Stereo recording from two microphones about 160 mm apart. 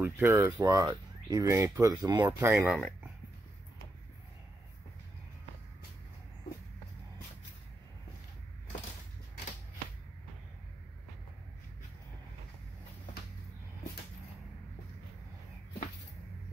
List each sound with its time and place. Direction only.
0.0 s speech: 15° right (ahead or behind)
2.5 s speech: 5° right (ahead or behind)